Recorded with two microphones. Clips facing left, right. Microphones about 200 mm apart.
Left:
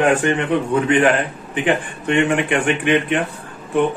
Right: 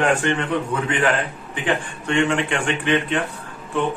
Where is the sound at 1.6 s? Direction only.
15° left (ahead or behind).